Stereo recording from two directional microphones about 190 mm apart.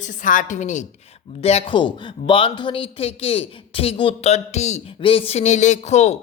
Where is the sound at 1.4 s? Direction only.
30° left (ahead or behind).